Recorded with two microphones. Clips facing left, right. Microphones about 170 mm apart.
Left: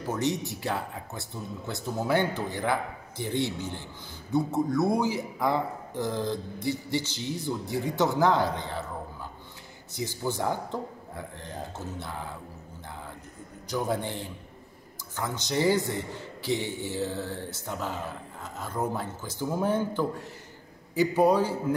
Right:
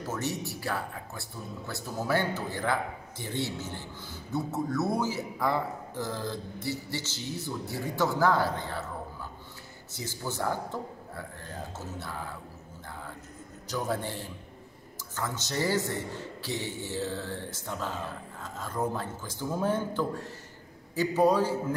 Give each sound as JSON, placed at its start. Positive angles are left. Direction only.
{"t": 0.0, "sound": "a man's voice", "side_deg": 15}
{"t": 9.9, "sound": "a man's voice", "side_deg": 15}
{"t": 13.7, "sound": "a man's voice", "side_deg": 15}